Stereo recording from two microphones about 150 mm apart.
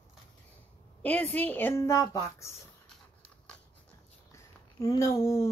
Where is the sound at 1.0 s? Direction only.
10° left (ahead or behind).